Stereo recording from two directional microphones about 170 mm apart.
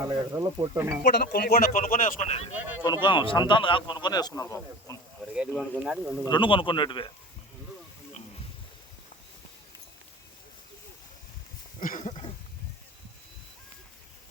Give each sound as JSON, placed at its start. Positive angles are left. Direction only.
{"t": 0.0, "sound": "speech", "side_deg": -15}
{"t": 1.0, "sound": "speech", "side_deg": 65}
{"t": 2.8, "sound": "speech", "side_deg": 25}
{"t": 5.5, "sound": "speech", "side_deg": 10}
{"t": 5.8, "sound": "speech", "side_deg": -5}
{"t": 6.2, "sound": "speech", "side_deg": 30}
{"t": 11.8, "sound": "a sound", "side_deg": 50}